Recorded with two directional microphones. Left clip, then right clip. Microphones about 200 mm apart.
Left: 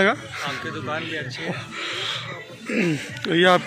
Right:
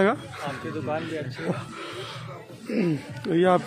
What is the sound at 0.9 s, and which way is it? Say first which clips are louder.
Speech: left 2 dB; 30° right (ahead or behind).